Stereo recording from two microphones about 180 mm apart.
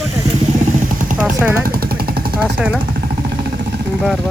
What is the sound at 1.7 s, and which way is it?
Jackhammer, 55° right (ahead or behind).